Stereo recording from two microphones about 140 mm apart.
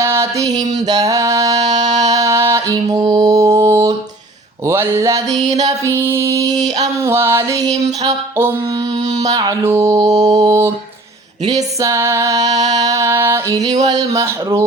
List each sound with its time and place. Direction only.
0.0 s music: 20° right (ahead or behind)
0.8 s mantra: 25° right (ahead or behind)
2.1 s music: 20° right (ahead or behind)
9.3 s mantra: 30° right (ahead or behind)
11.4 s music: 25° right (ahead or behind)
13.8 s mantra: 30° right (ahead or behind)